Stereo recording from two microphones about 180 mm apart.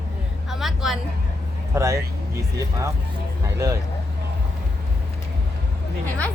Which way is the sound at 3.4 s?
15° right (ahead or behind).